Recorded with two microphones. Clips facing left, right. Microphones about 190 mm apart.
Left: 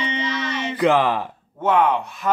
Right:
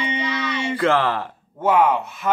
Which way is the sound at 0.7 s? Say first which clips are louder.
Left 2 dB; 15° left (ahead or behind).